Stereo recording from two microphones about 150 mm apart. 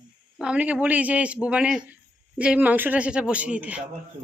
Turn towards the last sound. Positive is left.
turn(degrees=-10)  # may be behind; listen again after turning